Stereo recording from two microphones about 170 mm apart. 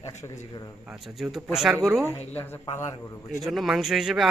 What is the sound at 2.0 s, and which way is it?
Speech, 15° left (ahead or behind).